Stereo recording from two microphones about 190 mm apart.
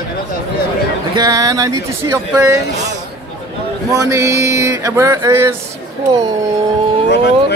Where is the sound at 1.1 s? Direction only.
20° right (ahead or behind).